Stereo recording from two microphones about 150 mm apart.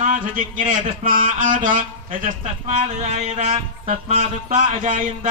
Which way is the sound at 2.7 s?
50° right (ahead or behind).